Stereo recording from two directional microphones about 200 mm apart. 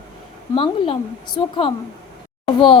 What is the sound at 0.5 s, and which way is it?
A woman's voice, 25° left (ahead or behind).